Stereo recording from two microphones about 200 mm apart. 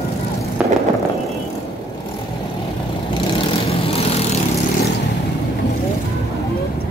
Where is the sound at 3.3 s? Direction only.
30° left (ahead or behind).